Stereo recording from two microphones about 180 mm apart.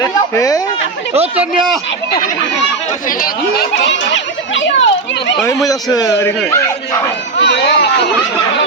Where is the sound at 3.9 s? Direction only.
90° left.